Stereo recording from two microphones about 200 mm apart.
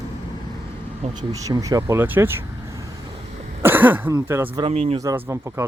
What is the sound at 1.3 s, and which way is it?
Speech, 15° right (ahead or behind).